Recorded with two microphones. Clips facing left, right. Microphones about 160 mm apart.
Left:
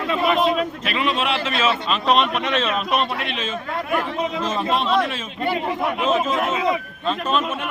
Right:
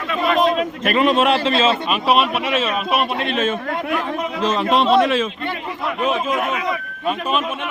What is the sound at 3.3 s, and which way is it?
Speech, 55° right (ahead or behind).